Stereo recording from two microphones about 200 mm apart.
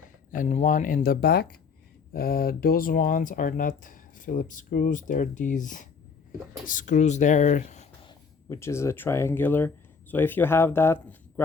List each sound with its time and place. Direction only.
0.3 s speech: 40° left (ahead or behind)
8.0 s speech: 15° left (ahead or behind)